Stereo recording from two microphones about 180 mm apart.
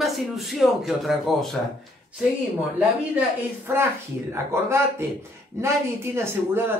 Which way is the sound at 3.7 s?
10° right (ahead or behind).